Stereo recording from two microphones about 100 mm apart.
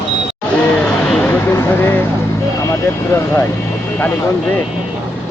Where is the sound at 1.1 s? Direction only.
15° left (ahead or behind).